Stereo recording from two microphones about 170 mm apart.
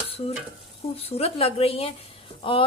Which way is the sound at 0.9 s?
35° left (ahead or behind).